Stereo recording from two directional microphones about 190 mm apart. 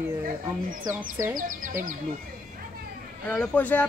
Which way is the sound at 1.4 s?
45° right (ahead or behind).